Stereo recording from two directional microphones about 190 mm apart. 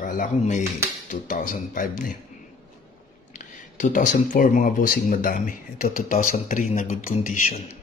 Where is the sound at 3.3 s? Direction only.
40° left (ahead or behind).